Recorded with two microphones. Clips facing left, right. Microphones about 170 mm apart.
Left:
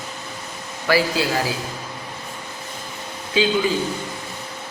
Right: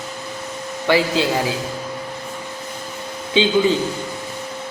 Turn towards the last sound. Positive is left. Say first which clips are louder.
# right 4 dB
turn(degrees=-25)  # may be behind; listen again after turning